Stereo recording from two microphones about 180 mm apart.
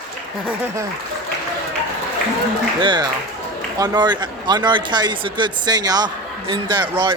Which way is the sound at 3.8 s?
25° right (ahead or behind).